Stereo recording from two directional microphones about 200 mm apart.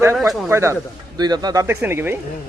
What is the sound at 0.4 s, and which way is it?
Speech, 15° right (ahead or behind).